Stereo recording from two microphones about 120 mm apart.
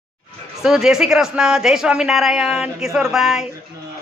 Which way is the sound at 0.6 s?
5° right (ahead or behind).